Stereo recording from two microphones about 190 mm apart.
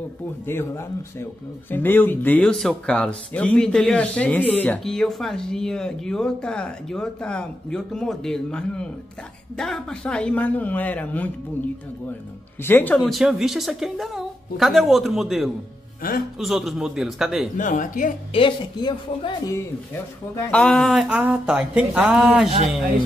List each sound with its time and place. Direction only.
0.5 s speech: 10° left (ahead or behind)
12.6 s speech: 10° left (ahead or behind)
16.0 s speech: 50° left (ahead or behind)
16.3 s speech: centre (ahead or behind)
17.6 s speech: 40° left (ahead or behind)
18.3 s speech: 25° left (ahead or behind); by 22.5 s 5° right (ahead or behind)